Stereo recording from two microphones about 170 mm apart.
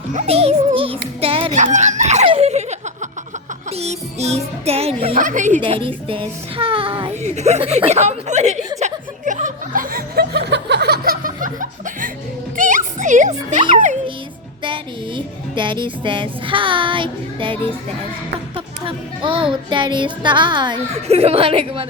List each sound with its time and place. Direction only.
0.1 s music: 40° right (ahead or behind)
5.1 s a woman's voice: 50° right (ahead or behind)
5.6 s music: 30° right (ahead or behind)
8.8 s chuckle: 50° right (ahead or behind)
12.5 s music: 50° right (ahead or behind)
14.6 s a woman's voice: 30° right (ahead or behind)
20.9 s music: 35° right (ahead or behind)